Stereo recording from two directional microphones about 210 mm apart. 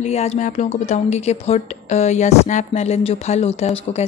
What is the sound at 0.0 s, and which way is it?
A woman's voice, 30° left (ahead or behind).